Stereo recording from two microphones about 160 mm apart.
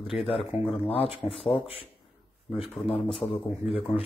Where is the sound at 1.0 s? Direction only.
Centre (ahead or behind).